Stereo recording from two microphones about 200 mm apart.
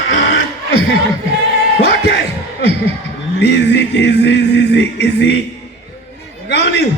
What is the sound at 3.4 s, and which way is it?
Music, 60° left (ahead or behind).